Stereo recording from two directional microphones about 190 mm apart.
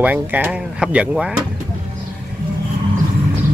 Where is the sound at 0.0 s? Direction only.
10° right (ahead or behind).